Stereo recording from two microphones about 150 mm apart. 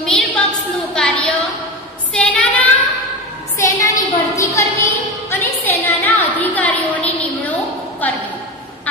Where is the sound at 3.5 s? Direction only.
20° left (ahead or behind).